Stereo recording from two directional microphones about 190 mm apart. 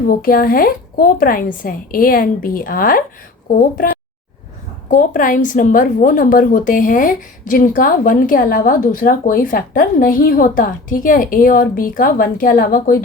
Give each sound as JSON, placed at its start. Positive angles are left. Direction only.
{"t": 0.1, "sound": "speech", "side_deg": 50}